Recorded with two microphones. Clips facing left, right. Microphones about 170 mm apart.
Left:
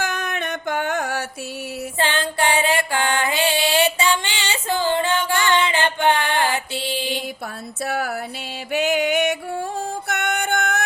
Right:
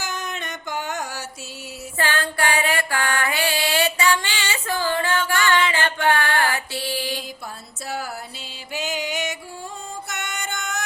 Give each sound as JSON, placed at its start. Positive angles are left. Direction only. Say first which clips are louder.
{"t": 0.0, "sound": "music", "louder": "left 5 dB", "side_deg": 60}
{"t": 2.0, "sound": "music", "louder": "left 1 dB", "side_deg": 20}
{"t": 7.9, "sound": "music", "louder": "left 5 dB", "side_deg": 60}